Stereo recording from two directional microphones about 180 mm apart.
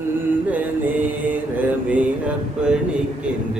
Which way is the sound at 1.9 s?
5° right (ahead or behind).